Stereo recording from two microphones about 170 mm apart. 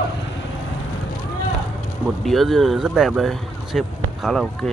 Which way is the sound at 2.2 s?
Centre (ahead or behind).